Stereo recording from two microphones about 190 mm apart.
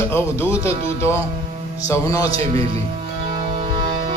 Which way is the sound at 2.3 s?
30° right (ahead or behind).